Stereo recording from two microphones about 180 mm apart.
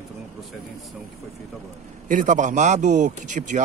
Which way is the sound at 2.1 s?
45° right (ahead or behind).